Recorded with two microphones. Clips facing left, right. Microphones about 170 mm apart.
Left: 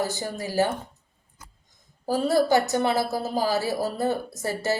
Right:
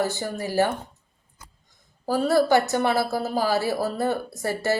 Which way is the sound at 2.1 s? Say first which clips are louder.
Right 1 dB; 20° left (ahead or behind).